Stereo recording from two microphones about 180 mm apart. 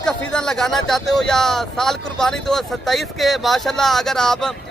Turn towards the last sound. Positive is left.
turn(degrees=5)  # may be behind; listen again after turning